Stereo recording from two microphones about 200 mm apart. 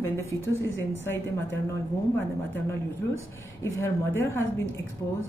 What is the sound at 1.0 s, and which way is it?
Speech, 65° left (ahead or behind).